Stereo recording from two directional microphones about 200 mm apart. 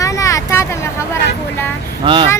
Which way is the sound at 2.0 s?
25° right (ahead or behind).